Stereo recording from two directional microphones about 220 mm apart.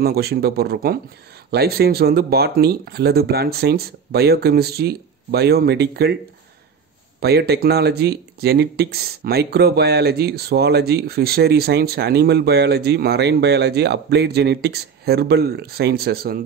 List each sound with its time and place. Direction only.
0.0 s speech: 45° right (ahead or behind)
7.2 s speech: 45° right (ahead or behind)